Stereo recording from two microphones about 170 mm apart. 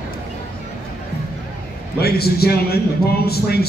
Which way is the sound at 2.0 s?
65° left (ahead or behind).